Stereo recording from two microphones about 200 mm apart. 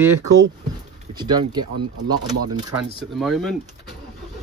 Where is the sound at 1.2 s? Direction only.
20° right (ahead or behind).